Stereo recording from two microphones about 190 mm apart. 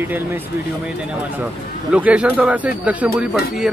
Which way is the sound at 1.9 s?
5° right (ahead or behind).